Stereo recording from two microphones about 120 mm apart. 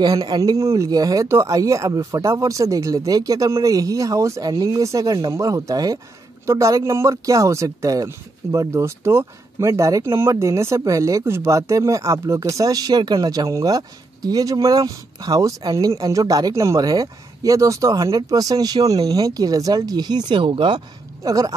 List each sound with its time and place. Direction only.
0.0 s speech: 35° right (ahead or behind)